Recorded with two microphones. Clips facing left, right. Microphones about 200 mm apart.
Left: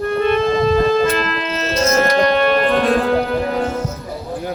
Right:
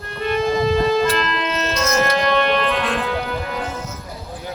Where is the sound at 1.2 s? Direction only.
35° left (ahead or behind).